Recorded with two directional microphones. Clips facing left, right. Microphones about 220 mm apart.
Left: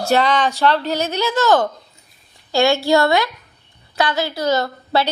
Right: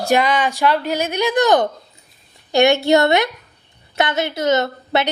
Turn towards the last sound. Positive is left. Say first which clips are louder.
# even
turn(degrees=-20)  # may be behind; listen again after turning